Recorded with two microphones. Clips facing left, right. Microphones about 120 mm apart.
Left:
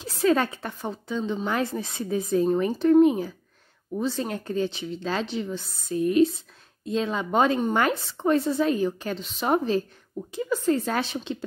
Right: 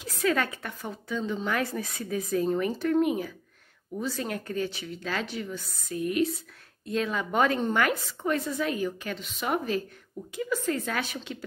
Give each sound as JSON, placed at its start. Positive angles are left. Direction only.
{"t": 0.0, "sound": "a woman's voice", "side_deg": 30}